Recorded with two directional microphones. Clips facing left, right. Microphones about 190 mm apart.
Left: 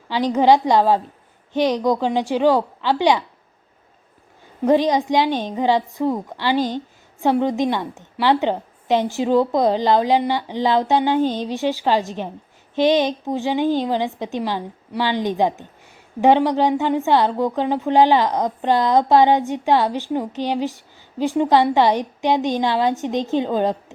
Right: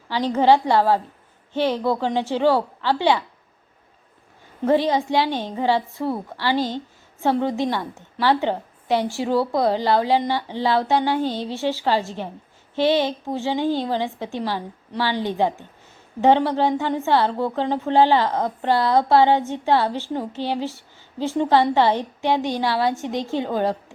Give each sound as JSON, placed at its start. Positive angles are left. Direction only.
{"t": 0.1, "sound": "a woman's voice", "side_deg": 15}
{"t": 4.6, "sound": "a woman's voice", "side_deg": 15}